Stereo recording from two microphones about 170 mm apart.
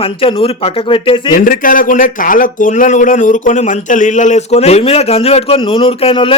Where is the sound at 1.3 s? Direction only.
55° left (ahead or behind).